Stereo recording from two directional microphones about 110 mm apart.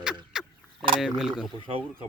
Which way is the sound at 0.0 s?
5° right (ahead or behind).